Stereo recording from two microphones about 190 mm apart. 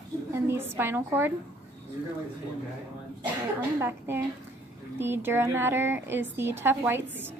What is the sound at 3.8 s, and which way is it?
A woman's voice, 10° right (ahead or behind).